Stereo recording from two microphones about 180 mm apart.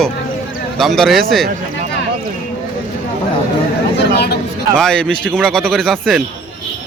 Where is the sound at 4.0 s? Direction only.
65° left (ahead or behind).